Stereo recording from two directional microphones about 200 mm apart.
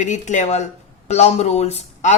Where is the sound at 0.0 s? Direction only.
35° left (ahead or behind).